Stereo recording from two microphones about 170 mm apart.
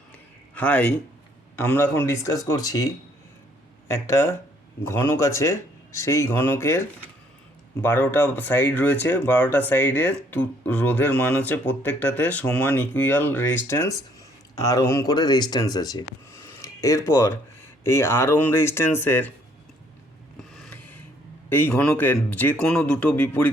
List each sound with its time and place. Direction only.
0.5 s speech: 10° left (ahead or behind)
20.5 s a sound: 5° left (ahead or behind)
21.5 s speech: 10° left (ahead or behind)